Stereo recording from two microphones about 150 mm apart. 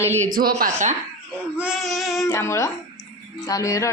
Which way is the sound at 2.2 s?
20° left (ahead or behind).